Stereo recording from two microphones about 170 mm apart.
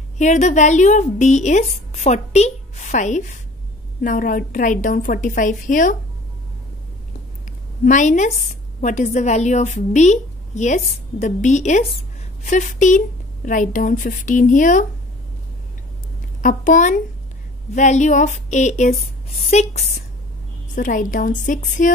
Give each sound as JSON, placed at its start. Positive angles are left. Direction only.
{"t": 0.2, "sound": "a woman's voice", "side_deg": 45}
{"t": 7.8, "sound": "a woman's voice", "side_deg": 50}
{"t": 16.3, "sound": "a woman's voice", "side_deg": 50}
{"t": 20.7, "sound": "a woman's voice", "side_deg": 50}